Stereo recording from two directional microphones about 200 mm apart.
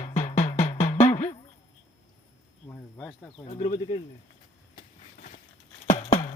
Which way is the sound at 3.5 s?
25° left (ahead or behind).